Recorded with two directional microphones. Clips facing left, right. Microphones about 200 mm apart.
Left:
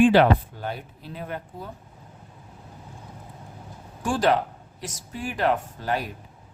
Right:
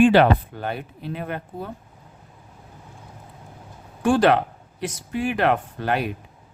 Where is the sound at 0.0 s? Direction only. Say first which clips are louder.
Right 2 dB; 60° right (ahead or behind).